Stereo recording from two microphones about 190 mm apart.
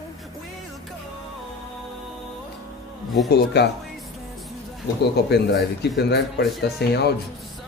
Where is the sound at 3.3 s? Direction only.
60° left (ahead or behind).